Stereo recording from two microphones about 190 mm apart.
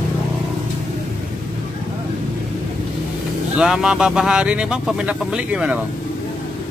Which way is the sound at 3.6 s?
5° right (ahead or behind).